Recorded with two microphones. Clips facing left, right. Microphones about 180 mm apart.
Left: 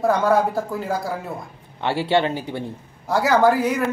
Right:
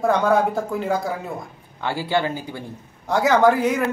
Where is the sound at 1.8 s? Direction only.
20° left (ahead or behind).